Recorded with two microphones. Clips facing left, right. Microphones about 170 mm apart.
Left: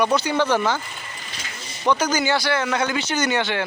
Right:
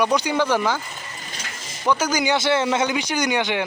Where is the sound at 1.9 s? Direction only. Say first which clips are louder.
Even; 10° right (ahead or behind).